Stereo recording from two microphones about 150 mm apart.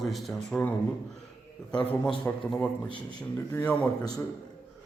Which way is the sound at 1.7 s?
10° left (ahead or behind).